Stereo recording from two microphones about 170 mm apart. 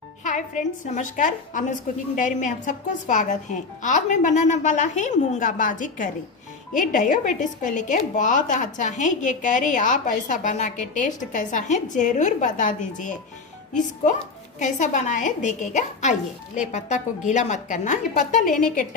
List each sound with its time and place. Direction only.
0.2 s a woman's voice: 45° left (ahead or behind)
14.6 s a woman's voice: 45° left (ahead or behind)